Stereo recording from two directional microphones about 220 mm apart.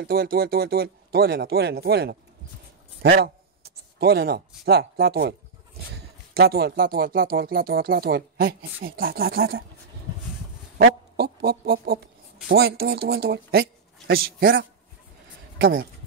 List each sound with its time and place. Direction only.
0.0 s speech: 40° right (ahead or behind)
6.3 s speech: 45° right (ahead or behind)
10.8 s a sound: 45° right (ahead or behind)
12.4 s speech: 45° right (ahead or behind)